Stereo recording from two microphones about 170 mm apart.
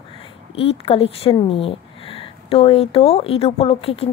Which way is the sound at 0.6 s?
35° left (ahead or behind).